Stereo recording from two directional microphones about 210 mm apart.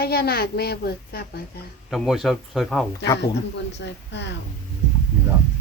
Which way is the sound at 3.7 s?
55° left (ahead or behind).